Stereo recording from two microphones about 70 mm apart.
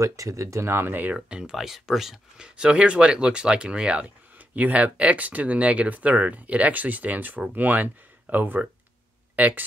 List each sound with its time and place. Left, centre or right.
0.0 s speech: right
1.1 s speech: centre